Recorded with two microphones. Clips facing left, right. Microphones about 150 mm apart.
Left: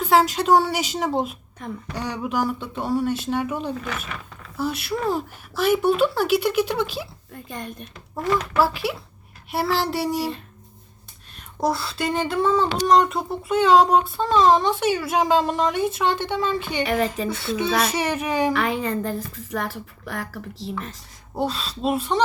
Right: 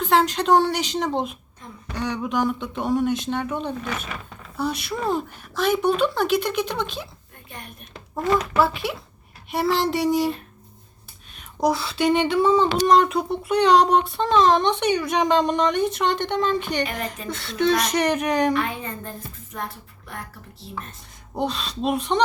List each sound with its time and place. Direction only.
0.0 s speech: 5° left (ahead or behind)
8.1 s speech: centre (ahead or behind)
11.6 s speech: centre (ahead or behind)
16.8 s a woman's voice: 85° left
17.2 s speech: 5° left (ahead or behind)
18.5 s a woman's voice: 75° left (ahead or behind)
21.3 s speech: 5° left (ahead or behind)